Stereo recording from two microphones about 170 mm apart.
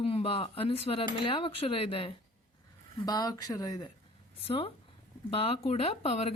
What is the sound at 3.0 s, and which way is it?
Speech, 20° left (ahead or behind).